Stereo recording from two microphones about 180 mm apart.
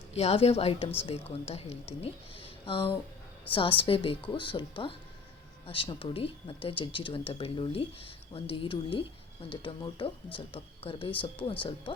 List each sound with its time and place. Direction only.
0.1 s speech: 35° left (ahead or behind)